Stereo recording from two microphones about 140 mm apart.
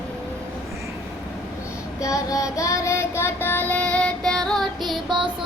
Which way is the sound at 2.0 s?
25° left (ahead or behind).